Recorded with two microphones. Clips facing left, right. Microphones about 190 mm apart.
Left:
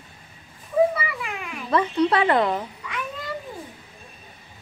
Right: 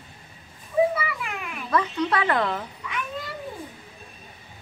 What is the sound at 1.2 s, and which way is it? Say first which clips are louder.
Children playing: left 1 dB; centre (ahead or behind).